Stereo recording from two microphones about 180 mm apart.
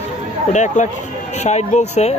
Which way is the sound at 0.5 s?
40° left (ahead or behind).